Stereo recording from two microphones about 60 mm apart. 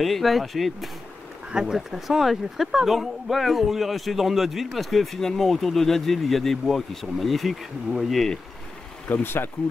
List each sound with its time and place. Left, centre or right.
0.0 s speech: centre
9.2 s speech: left